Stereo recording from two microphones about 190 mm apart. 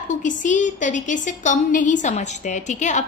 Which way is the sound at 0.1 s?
40° left (ahead or behind).